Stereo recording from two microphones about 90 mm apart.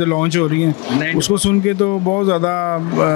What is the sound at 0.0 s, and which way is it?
Speech, 15° left (ahead or behind).